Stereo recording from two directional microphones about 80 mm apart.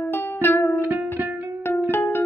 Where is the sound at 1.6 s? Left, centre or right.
Left.